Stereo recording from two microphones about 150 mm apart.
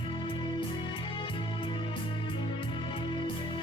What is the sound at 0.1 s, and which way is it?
Music, 30° left (ahead or behind).